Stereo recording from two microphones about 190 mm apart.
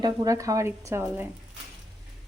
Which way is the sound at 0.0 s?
20° right (ahead or behind).